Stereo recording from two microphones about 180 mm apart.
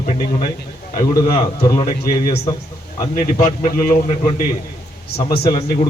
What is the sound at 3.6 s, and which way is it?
Speech, 45° left (ahead or behind).